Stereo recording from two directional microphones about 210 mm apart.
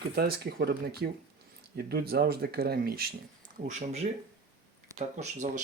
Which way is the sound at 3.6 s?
35° right (ahead or behind).